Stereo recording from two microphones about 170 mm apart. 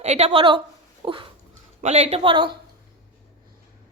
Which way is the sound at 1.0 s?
30° right (ahead or behind).